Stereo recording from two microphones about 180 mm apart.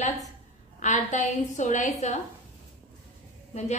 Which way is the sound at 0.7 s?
45° left (ahead or behind).